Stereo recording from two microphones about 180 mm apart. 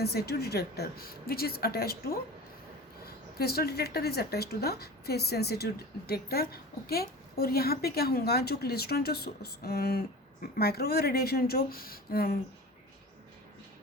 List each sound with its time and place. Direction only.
0.0 s a woman's voice: 60° left (ahead or behind)
3.3 s a woman's voice: 60° left (ahead or behind)